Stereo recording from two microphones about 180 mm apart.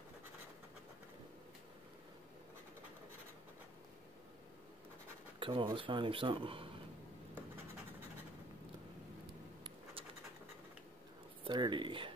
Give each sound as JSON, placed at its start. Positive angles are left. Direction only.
{"t": 5.4, "sound": "speech", "side_deg": -25}
{"t": 11.4, "sound": "speech", "side_deg": -25}